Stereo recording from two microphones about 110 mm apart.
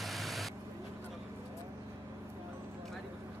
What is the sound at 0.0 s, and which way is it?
Vehicle, centre (ahead or behind).